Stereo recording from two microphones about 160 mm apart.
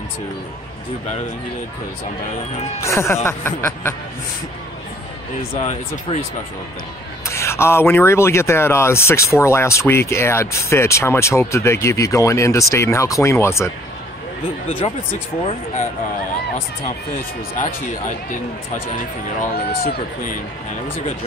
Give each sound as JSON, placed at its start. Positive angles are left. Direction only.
{"t": 2.8, "sound": "speech", "side_deg": 15}
{"t": 5.6, "sound": "speech", "side_deg": 45}
{"t": 7.2, "sound": "speech", "side_deg": 15}
{"t": 14.8, "sound": "speech", "side_deg": 40}
{"t": 17.6, "sound": "speech", "side_deg": 50}
{"t": 19.4, "sound": "speech", "side_deg": 65}